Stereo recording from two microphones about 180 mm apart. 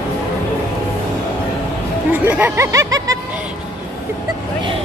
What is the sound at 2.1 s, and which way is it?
Music, 10° right (ahead or behind).